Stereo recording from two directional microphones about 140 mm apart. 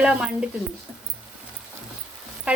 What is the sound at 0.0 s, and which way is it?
Speech, 5° right (ahead or behind).